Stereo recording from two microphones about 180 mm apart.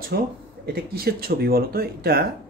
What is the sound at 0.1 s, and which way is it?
Speech, 60° right (ahead or behind).